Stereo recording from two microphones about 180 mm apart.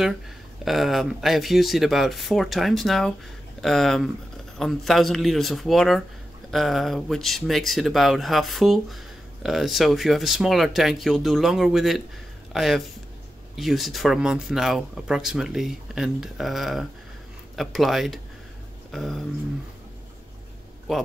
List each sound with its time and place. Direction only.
0.7 s speech: centre (ahead or behind)
18.9 s a sound: centre (ahead or behind)
20.9 s speech: centre (ahead or behind)